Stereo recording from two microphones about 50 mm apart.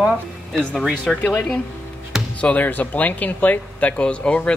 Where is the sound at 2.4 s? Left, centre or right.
Left.